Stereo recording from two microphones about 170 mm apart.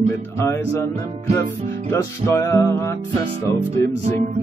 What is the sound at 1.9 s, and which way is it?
Music, 20° left (ahead or behind).